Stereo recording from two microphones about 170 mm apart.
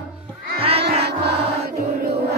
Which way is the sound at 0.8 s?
75° right (ahead or behind).